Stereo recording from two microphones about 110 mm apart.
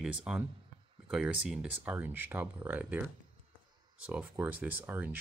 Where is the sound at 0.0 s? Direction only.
10° right (ahead or behind).